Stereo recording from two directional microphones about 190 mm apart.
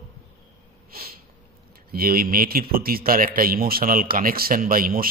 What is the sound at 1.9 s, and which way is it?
A man's voice, 50° right (ahead or behind).